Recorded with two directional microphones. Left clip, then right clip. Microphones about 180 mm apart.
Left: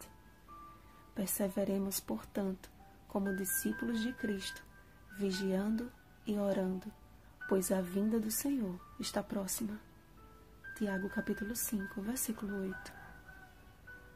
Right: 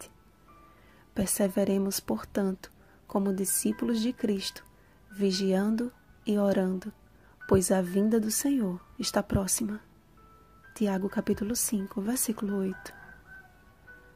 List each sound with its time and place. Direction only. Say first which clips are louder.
1.1 s speech: right 9 dB; 35° right (ahead or behind)